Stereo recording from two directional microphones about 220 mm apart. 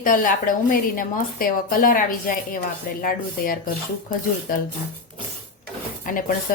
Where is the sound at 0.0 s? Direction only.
40° left (ahead or behind).